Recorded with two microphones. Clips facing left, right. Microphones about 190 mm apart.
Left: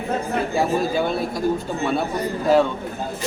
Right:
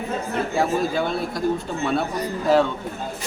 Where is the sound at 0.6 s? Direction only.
5° left (ahead or behind).